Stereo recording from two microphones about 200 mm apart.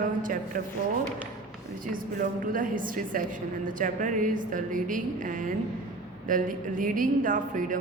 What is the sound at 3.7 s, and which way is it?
A woman's voice, 40° right (ahead or behind).